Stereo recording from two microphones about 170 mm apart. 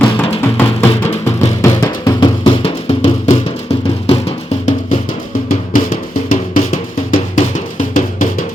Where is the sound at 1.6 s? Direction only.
20° left (ahead or behind).